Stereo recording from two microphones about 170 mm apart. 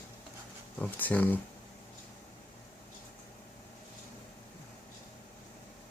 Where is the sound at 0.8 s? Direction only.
10° left (ahead or behind).